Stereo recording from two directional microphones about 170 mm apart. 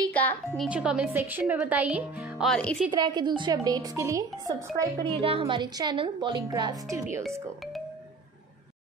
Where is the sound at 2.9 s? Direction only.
25° right (ahead or behind).